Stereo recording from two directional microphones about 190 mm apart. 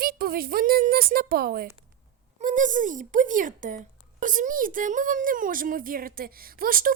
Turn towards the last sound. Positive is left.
turn(degrees=-50)  # may be behind; listen again after turning